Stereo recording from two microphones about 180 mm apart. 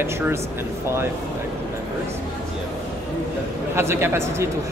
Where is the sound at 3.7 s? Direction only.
15° right (ahead or behind).